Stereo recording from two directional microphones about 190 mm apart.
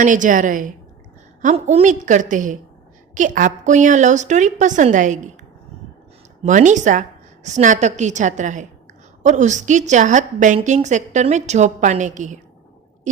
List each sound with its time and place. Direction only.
0.0 s a woman's voice: 40° right (ahead or behind)
6.4 s a woman's voice: 40° right (ahead or behind)